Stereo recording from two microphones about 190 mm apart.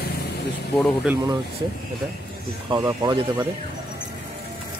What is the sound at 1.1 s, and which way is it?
Speech, 5° right (ahead or behind).